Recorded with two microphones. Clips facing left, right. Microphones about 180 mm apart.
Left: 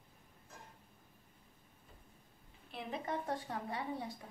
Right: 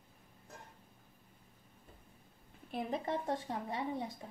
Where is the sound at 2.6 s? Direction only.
45° right (ahead or behind).